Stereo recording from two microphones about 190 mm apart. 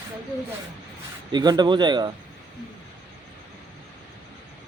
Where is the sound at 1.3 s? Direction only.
20° right (ahead or behind).